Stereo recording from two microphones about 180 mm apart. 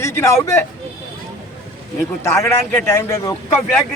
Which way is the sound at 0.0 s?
15° left (ahead or behind).